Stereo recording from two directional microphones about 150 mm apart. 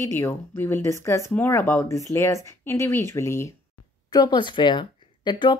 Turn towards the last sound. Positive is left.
turn(degrees=30)  # may be behind; listen again after turning